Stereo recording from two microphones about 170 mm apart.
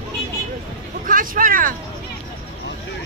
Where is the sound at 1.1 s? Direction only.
55° right (ahead or behind).